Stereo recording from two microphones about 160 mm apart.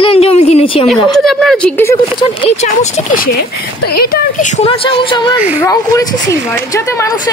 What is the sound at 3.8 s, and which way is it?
Speech, 70° left (ahead or behind).